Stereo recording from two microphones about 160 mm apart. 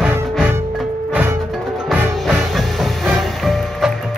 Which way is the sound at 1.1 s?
10° right (ahead or behind).